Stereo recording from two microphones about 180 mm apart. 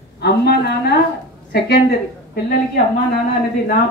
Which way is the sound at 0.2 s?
65° left (ahead or behind).